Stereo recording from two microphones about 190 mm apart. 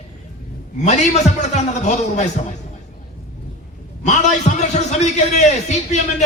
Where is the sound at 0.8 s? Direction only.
35° left (ahead or behind).